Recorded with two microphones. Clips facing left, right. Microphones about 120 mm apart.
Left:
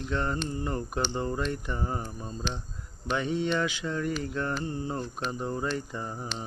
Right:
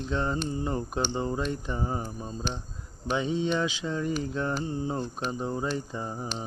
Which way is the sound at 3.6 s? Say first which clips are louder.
Right 1 dB; 20° right (ahead or behind).